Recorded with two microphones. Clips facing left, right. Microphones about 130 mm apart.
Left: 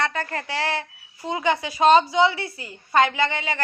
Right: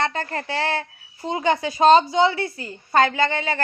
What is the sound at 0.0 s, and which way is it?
A woman's voice, 30° right (ahead or behind).